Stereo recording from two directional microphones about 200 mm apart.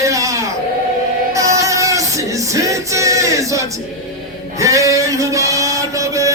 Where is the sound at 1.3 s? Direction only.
15° right (ahead or behind).